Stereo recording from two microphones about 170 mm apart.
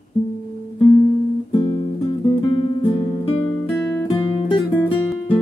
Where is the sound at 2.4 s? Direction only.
30° left (ahead or behind).